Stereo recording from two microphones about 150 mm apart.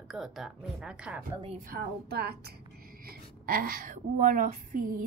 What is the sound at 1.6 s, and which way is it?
A woman's voice, 80° right.